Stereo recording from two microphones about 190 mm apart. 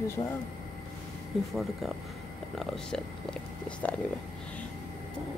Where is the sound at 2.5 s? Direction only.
5° left (ahead or behind).